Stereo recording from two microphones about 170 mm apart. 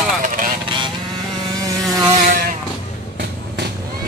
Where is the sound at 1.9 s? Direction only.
20° right (ahead or behind).